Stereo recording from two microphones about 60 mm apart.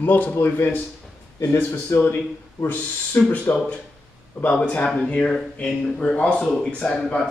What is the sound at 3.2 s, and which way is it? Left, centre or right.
Speech, left.